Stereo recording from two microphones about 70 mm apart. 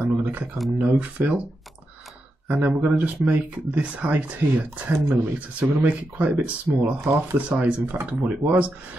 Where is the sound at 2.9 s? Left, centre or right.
Right.